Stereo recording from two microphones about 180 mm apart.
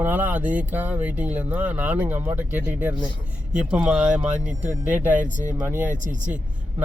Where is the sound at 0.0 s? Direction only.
10° right (ahead or behind).